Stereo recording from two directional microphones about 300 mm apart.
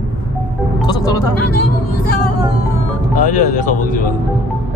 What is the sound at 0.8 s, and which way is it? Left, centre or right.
Music, centre.